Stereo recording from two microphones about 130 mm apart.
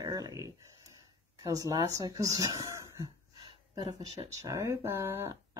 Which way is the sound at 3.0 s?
35° right (ahead or behind).